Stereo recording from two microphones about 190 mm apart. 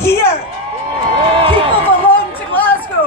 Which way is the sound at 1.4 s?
25° right (ahead or behind).